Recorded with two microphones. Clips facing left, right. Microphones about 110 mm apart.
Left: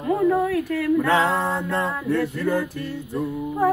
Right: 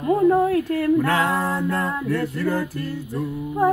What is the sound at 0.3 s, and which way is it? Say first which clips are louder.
Humming: right 3 dB; 30° right (ahead or behind).